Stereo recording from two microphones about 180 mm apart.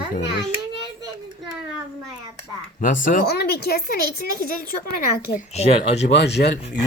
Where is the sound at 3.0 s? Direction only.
55° left (ahead or behind).